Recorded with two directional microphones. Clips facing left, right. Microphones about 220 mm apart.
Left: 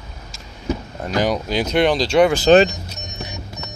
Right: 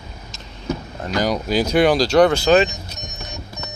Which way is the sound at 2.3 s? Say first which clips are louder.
Left 2 dB; 15° left (ahead or behind).